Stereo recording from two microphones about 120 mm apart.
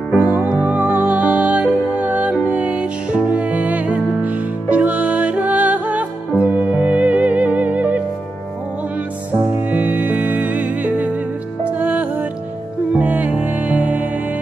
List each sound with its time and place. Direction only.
0.1 s music: 15° right (ahead or behind)
9.5 s music: 15° right (ahead or behind)